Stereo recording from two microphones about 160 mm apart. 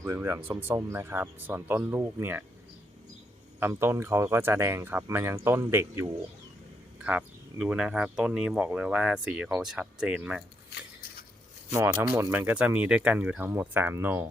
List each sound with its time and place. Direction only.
0.0 s speech: 15° right (ahead or behind)
3.6 s speech: 15° right (ahead or behind)
7.0 s speech: 5° right (ahead or behind)
11.7 s speech: 15° right (ahead or behind)